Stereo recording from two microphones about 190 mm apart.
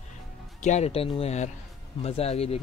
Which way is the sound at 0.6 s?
35° left (ahead or behind).